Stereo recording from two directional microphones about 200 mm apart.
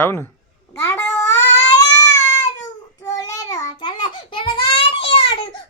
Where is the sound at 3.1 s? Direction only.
15° left (ahead or behind).